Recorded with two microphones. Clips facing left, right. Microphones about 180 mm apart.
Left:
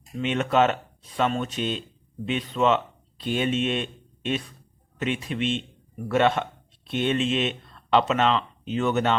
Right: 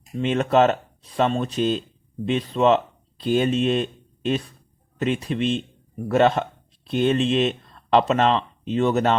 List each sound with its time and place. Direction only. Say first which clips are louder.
0.2 s speech: right 3 dB; 35° right (ahead or behind)
4.9 s speech: right 4 dB; 35° right (ahead or behind)